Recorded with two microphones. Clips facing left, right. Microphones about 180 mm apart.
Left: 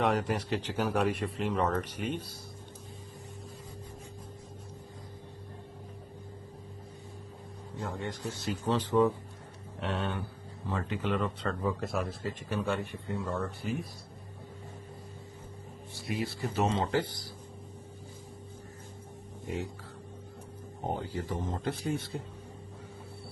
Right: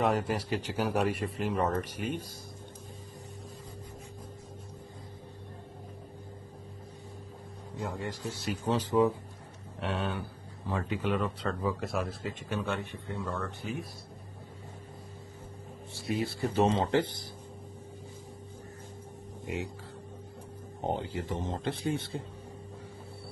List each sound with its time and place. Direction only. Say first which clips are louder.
0.0 s a man's voice: even; 5° right (ahead or behind)
7.8 s a man's voice: even; 5° right (ahead or behind)
16.1 s a man's voice: right 3 dB; 30° right (ahead or behind)
19.4 s speech: even; 15° right (ahead or behind)
20.8 s a man's voice: right 2 dB; 25° right (ahead or behind)